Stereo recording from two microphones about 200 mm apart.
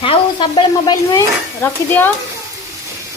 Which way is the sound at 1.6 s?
10° left (ahead or behind).